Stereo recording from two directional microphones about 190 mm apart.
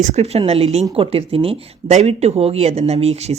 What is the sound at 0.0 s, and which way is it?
Speech, 35° right (ahead or behind).